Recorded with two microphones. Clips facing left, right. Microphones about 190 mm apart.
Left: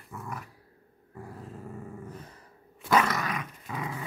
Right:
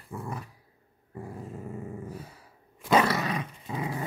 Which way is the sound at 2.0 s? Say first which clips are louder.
Right 3 dB; 10° right (ahead or behind).